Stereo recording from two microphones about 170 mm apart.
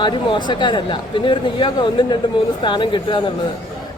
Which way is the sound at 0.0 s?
25° left (ahead or behind).